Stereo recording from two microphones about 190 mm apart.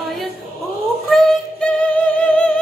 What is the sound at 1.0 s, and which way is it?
Music, 5° left (ahead or behind).